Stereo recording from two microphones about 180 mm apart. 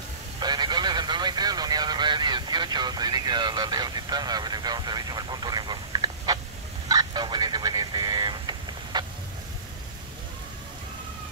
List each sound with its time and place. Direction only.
0.4 s speech: 25° right (ahead or behind)
6.9 s vehicle: 25° right (ahead or behind)